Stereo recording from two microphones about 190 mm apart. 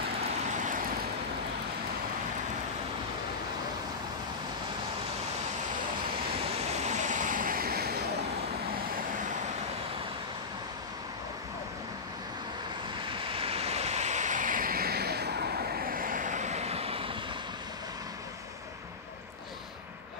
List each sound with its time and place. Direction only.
6.6 s waves: 35° right (ahead or behind); by 7.9 s 50° right (ahead or behind)
13.1 s vehicle: 30° right (ahead or behind)